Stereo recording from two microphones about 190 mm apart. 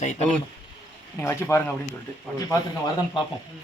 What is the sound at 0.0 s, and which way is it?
Speech, 40° left (ahead or behind).